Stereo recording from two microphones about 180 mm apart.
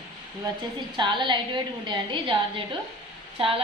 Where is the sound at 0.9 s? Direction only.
25° right (ahead or behind).